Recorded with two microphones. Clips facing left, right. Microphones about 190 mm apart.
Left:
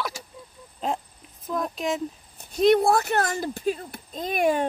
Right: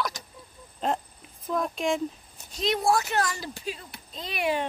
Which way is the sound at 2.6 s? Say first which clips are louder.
Left 6 dB; 55° left (ahead or behind).